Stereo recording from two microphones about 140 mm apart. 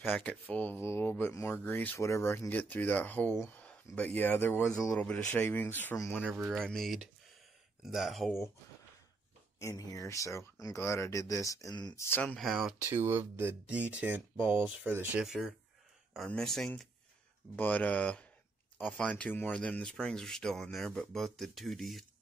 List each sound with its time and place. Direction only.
0.1 s speech: 10° left (ahead or behind)
6.2 s speech: 10° right (ahead or behind)
6.6 s speech: 5° left (ahead or behind)
9.6 s speech: 25° left (ahead or behind)
12.0 s speech: 15° left (ahead or behind)
12.4 s speech: centre (ahead or behind)
12.9 s speech: 15° right (ahead or behind); by 22.0 s centre (ahead or behind)